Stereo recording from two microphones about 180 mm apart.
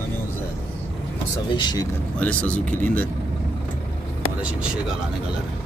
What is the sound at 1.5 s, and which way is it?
Speech, 25° left (ahead or behind).